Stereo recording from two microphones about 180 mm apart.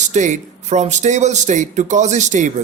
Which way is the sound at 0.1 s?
40° right (ahead or behind).